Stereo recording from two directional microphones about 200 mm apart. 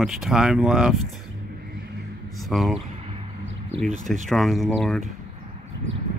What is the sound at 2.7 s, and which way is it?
Vehicle, 30° right (ahead or behind).